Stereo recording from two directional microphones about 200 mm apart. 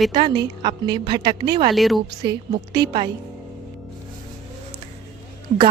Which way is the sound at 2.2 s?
20° right (ahead or behind).